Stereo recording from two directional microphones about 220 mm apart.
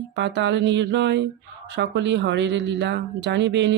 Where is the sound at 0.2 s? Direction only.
50° right (ahead or behind).